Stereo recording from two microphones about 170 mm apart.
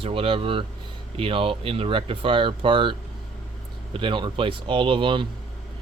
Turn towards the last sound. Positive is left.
turn(degrees=-30)  # may be behind; listen again after turning